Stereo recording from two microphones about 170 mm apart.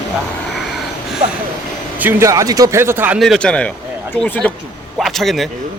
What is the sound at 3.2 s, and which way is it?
Speech, centre (ahead or behind).